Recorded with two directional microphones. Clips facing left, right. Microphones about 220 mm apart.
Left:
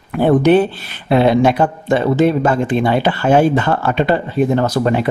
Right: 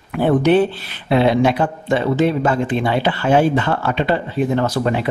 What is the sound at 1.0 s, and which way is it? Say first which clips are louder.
Speech: left 3 dB; 45° left (ahead or behind).